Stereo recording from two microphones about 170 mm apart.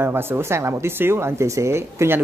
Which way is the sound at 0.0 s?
15° right (ahead or behind).